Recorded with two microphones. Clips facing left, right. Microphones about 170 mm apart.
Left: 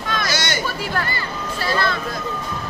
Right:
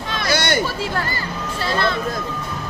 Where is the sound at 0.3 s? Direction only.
60° right (ahead or behind).